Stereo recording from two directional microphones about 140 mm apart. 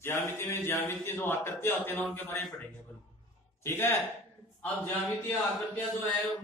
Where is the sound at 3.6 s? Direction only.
15° left (ahead or behind).